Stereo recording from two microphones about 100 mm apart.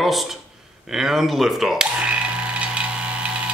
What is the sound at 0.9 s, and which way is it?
Mechanisms, 5° right (ahead or behind).